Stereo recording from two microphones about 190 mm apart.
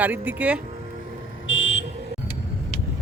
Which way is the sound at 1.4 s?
80° left.